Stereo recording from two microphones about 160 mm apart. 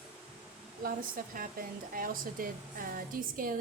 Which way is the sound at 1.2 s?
60° right (ahead or behind).